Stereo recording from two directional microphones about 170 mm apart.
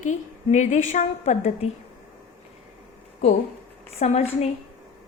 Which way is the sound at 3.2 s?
40° left (ahead or behind).